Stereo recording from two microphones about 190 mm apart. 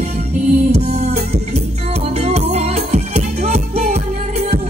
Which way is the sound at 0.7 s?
35° right (ahead or behind).